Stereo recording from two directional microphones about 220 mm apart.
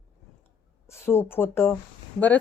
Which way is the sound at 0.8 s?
10° left (ahead or behind).